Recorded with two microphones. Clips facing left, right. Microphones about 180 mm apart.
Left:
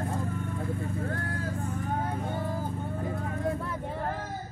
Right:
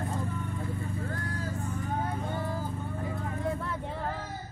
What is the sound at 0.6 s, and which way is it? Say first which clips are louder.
Vehicle: left 3 dB; 55° left (ahead or behind).